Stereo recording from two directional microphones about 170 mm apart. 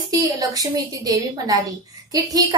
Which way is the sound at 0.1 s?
20° right (ahead or behind).